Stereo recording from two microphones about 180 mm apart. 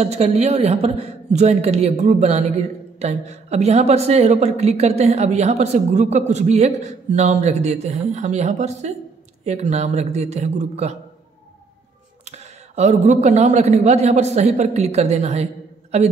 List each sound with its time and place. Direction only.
0.0 s a man's voice: 35° right (ahead or behind)
12.3 s a man's voice: 40° right (ahead or behind)